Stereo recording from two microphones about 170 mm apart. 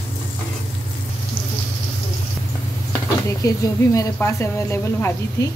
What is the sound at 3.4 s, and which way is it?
A woman's voice, 20° left (ahead or behind).